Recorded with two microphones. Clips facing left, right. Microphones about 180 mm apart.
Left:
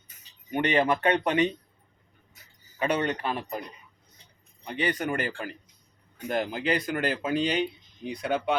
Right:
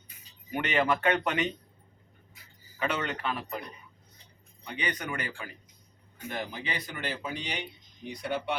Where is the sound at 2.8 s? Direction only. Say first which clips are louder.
Left 5 dB; 35° left (ahead or behind).